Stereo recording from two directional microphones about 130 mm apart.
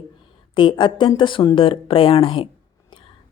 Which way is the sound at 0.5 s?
35° left (ahead or behind).